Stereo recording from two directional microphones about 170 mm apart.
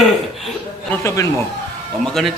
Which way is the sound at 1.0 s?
20° left (ahead or behind).